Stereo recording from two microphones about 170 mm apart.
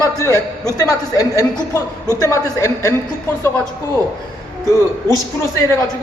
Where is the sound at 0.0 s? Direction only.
20° left (ahead or behind).